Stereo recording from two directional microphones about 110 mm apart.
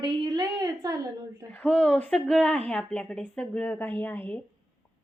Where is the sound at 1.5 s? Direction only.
10° left (ahead or behind).